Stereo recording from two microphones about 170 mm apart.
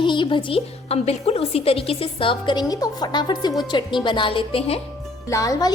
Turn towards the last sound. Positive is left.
turn(degrees=20)  # may be behind; listen again after turning